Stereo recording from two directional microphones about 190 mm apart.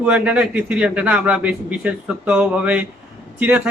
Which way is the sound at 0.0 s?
5° right (ahead or behind).